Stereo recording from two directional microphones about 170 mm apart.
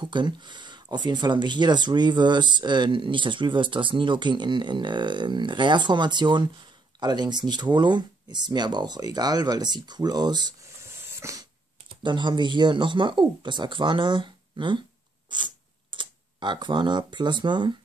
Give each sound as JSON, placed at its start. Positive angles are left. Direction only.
{"t": 0.0, "sound": "speech", "side_deg": -25}
{"t": 12.0, "sound": "speech", "side_deg": -25}